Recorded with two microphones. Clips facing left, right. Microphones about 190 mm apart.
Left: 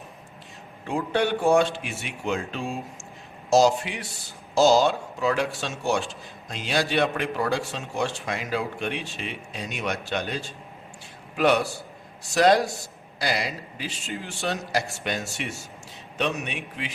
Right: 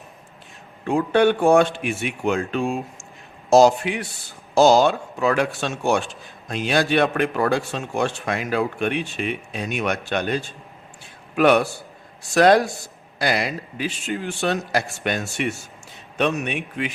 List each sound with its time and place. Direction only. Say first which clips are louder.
0.9 s a man's voice: right 7 dB; 55° right (ahead or behind)